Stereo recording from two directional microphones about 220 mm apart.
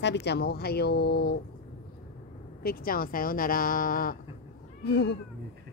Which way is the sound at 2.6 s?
40° left (ahead or behind).